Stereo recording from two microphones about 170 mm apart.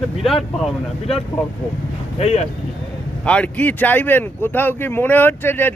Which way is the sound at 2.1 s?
40° left (ahead or behind).